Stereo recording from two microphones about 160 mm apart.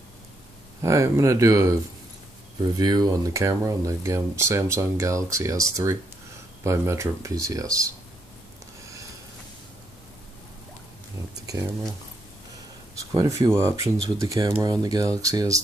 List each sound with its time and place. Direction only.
0.8 s speech: 15° right (ahead or behind)
11.4 s speech: 20° right (ahead or behind)
13.1 s speech: 20° right (ahead or behind)